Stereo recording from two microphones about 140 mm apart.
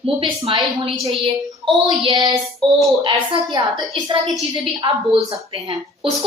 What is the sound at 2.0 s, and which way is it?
Speech, 35° right (ahead or behind).